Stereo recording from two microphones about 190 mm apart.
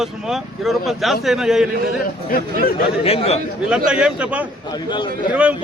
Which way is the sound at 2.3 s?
50° left (ahead or behind).